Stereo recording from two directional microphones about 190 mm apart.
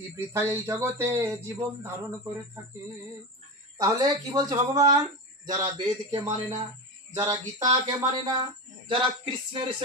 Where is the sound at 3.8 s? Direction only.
20° right (ahead or behind).